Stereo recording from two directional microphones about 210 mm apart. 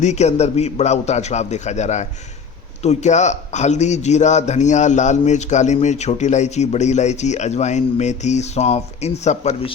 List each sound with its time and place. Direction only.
0.0 s a man's voice: 35° left (ahead or behind)